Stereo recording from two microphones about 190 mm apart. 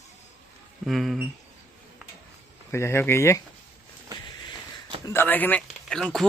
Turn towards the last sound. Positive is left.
turn(degrees=5)  # may be behind; listen again after turning